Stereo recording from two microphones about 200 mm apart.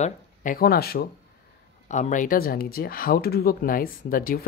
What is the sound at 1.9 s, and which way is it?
Speech, 40° left (ahead or behind).